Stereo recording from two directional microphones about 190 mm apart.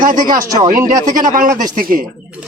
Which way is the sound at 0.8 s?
20° right (ahead or behind).